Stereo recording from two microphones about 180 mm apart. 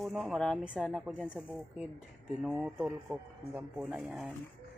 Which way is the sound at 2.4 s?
10° right (ahead or behind).